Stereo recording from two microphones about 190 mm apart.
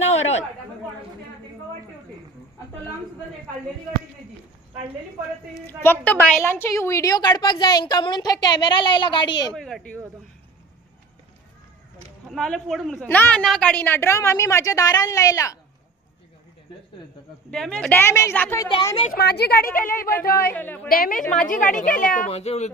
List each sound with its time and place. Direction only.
0.0 s chatter: 35° left (ahead or behind)
5.8 s a woman's voice: 10° left (ahead or behind)
9.6 s speech: centre (ahead or behind)
12.3 s a woman's voice: centre (ahead or behind); by 15.5 s 20° left (ahead or behind)
17.5 s a woman's voice: 5° left (ahead or behind)
19.1 s a woman's voice: 60° left (ahead or behind)
19.9 s a woman's voice: 10° left (ahead or behind)
20.2 s a woman's voice: 50° left (ahead or behind)
20.5 s a woman's voice: 10° left (ahead or behind)
20.9 s a woman's voice: 50° left (ahead or behind)
22.3 s a child's voice: 35° left (ahead or behind)